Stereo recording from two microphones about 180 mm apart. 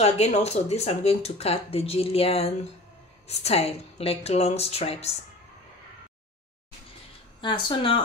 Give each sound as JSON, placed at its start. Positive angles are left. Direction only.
{"t": 0.0, "sound": "speech", "side_deg": 35}
{"t": 7.4, "sound": "speech", "side_deg": 30}